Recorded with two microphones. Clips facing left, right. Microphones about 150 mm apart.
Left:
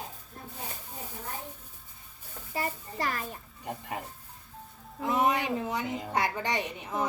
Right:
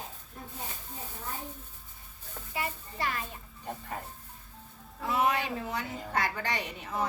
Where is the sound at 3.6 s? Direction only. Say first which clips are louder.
Left 2 dB; 10° left (ahead or behind).